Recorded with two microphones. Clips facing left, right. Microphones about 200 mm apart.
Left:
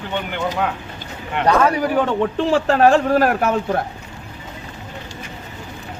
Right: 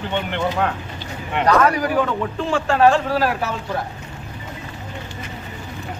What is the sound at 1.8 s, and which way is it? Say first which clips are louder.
A man's voice: left 2 dB; 30° left (ahead or behind).